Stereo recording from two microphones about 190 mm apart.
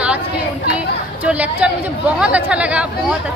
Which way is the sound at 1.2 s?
10° right (ahead or behind).